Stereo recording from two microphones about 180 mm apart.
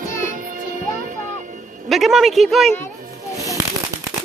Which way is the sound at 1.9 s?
Centre (ahead or behind).